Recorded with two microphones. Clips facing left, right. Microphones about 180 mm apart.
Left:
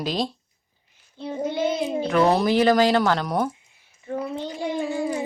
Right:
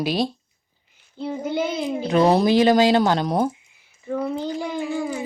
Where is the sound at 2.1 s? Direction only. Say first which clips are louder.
Right 3 dB; 20° right (ahead or behind).